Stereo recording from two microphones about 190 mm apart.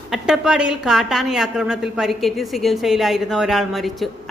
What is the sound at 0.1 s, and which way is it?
A woman's voice, 5° right (ahead or behind).